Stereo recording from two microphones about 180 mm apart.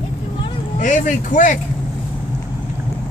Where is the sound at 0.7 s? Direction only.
45° left (ahead or behind).